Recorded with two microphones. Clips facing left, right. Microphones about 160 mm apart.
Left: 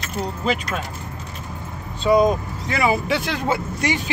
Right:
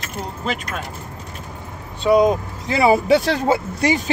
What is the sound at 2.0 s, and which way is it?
Speech, 15° right (ahead or behind).